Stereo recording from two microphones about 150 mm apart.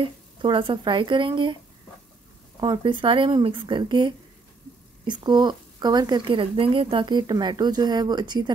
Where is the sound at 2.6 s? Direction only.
30° right (ahead or behind).